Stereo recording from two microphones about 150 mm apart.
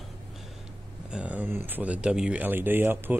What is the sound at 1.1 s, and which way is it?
Speech, 10° right (ahead or behind).